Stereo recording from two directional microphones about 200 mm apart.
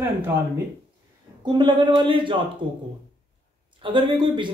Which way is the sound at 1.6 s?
25° right (ahead or behind).